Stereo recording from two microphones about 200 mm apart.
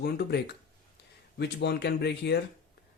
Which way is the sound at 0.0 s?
50° left (ahead or behind).